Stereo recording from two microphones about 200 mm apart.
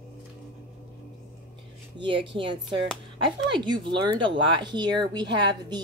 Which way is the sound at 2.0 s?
25° right (ahead or behind).